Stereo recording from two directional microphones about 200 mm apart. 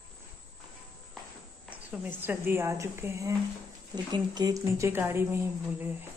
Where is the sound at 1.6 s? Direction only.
10° right (ahead or behind).